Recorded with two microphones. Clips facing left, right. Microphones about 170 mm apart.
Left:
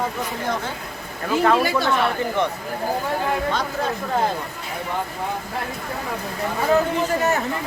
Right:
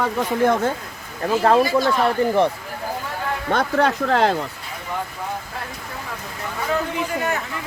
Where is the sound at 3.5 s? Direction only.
75° right (ahead or behind).